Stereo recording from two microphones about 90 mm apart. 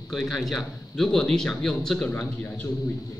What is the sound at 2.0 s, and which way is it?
Speech, 20° left (ahead or behind).